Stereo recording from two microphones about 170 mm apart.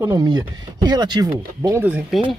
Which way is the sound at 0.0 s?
20° right (ahead or behind).